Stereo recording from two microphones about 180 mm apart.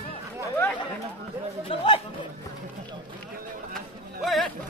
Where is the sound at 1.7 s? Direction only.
30° left (ahead or behind).